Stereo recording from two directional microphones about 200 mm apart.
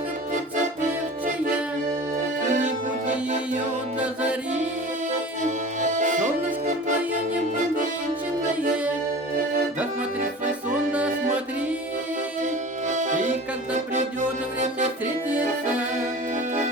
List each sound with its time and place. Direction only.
2.4 s accordion: 40° right (ahead or behind)
5.4 s music: 40° right (ahead or behind)
12.9 s accordion: 40° right (ahead or behind)